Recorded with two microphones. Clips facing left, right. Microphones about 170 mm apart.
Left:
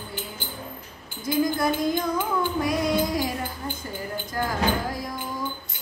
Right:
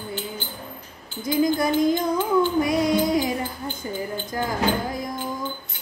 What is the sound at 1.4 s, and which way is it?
Music, 20° right (ahead or behind).